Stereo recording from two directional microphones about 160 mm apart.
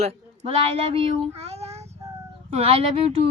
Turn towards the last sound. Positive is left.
turn(degrees=-40)  # may be behind; listen again after turning